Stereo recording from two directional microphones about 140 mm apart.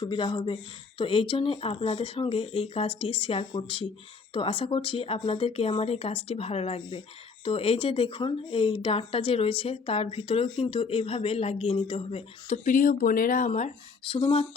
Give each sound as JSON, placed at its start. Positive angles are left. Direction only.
{"t": 0.0, "sound": "speech", "side_deg": 30}
{"t": 12.6, "sound": "speech", "side_deg": 75}
{"t": 14.1, "sound": "speech", "side_deg": 45}